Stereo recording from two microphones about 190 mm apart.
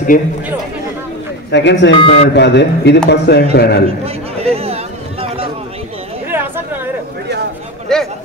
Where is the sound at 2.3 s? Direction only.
65° left (ahead or behind).